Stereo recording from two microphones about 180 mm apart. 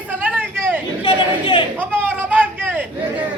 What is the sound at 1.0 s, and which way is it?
Chatter, 25° left (ahead or behind).